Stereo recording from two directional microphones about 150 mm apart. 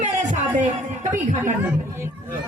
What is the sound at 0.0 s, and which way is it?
A woman's voice, 55° right (ahead or behind).